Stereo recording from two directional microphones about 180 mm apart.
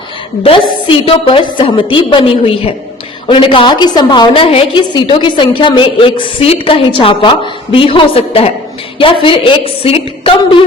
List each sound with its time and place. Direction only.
0.4 s a woman's voice: 30° left (ahead or behind)